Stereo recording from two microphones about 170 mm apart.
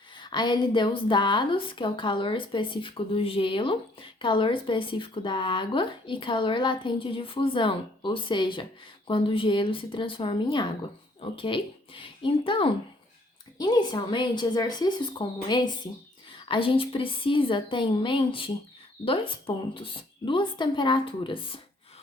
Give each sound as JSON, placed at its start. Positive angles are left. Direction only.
{"t": 0.2, "sound": "speech", "side_deg": 25}